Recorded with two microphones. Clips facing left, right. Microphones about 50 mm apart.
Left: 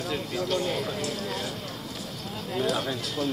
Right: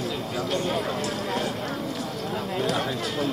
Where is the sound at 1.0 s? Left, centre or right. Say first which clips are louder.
Right 4 dB; right.